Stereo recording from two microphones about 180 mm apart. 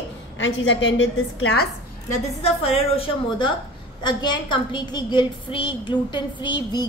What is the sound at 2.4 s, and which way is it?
A woman's voice, 35° left (ahead or behind).